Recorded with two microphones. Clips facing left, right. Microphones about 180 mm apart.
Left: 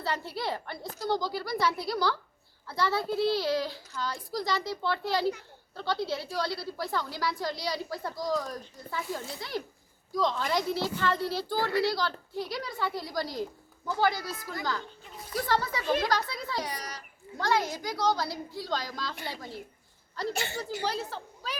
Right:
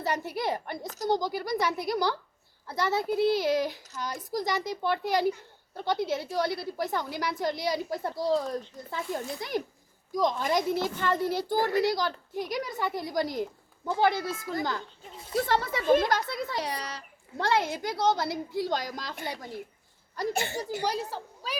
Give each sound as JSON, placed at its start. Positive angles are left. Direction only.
{"t": 0.0, "sound": "a woman's voice", "side_deg": -20}
{"t": 15.8, "sound": "speech", "side_deg": -50}
{"t": 16.0, "sound": "a woman's voice", "side_deg": -25}
{"t": 20.3, "sound": "speech", "side_deg": -55}
{"t": 20.8, "sound": "a woman's voice", "side_deg": -10}